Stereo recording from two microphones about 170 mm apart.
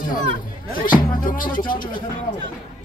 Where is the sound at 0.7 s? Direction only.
55° left (ahead or behind).